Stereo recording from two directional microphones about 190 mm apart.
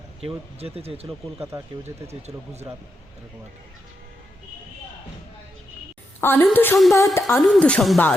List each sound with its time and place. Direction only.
0.2 s speech: 30° right (ahead or behind)
1.5 s speech: 15° right (ahead or behind)
2.0 s speech: 35° right (ahead or behind)
6.1 s a woman's voice: 10° left (ahead or behind)
6.7 s a woman's voice: centre (ahead or behind)
7.1 s a woman's voice: 15° left (ahead or behind)